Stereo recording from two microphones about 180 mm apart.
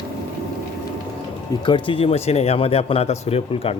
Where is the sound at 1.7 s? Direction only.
25° left (ahead or behind).